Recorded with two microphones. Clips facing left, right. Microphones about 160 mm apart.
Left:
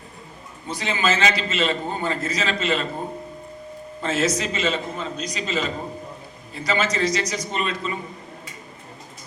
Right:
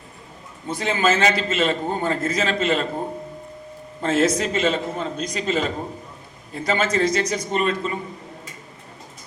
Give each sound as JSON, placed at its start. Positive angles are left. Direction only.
{"t": 0.7, "sound": "a man's voice", "side_deg": -50}
{"t": 4.0, "sound": "a man's voice", "side_deg": -50}